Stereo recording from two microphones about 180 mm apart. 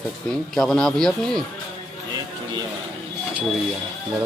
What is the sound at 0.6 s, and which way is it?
Speech, centre (ahead or behind).